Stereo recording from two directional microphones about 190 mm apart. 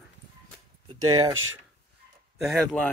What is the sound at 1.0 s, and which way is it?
Speech, 20° right (ahead or behind).